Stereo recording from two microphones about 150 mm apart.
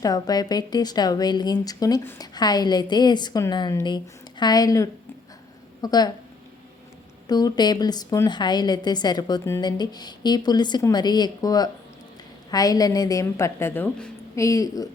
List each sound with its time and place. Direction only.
0.0 s a woman's voice: 25° left (ahead or behind)
7.3 s a woman's voice: 25° left (ahead or behind)